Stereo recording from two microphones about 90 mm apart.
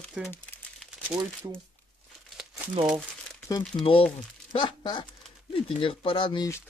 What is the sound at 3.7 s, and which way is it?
Speech, 90° left.